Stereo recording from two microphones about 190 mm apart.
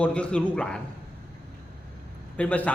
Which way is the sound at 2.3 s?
5° left (ahead or behind).